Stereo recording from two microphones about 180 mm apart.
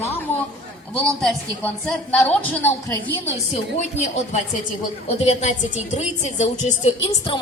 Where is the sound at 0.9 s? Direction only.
5° left (ahead or behind).